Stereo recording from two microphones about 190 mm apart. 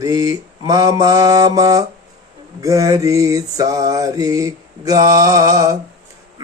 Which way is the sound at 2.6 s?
15° right (ahead or behind).